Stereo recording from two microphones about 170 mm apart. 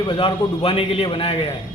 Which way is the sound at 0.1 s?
30° left (ahead or behind).